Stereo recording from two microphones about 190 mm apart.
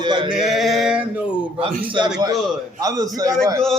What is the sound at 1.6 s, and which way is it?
A man's voice, 20° right (ahead or behind).